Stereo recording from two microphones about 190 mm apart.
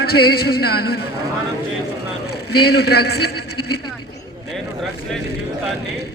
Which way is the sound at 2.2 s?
55° left (ahead or behind).